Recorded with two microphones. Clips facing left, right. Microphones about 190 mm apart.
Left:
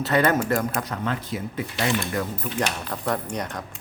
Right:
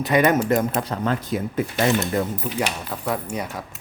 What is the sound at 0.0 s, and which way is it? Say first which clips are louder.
Speech: right 3 dB; 15° right (ahead or behind).